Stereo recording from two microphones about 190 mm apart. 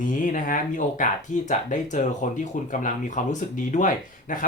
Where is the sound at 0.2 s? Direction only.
45° left (ahead or behind).